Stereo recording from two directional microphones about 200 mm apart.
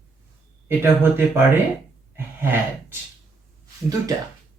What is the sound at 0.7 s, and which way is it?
Speech, 10° right (ahead or behind).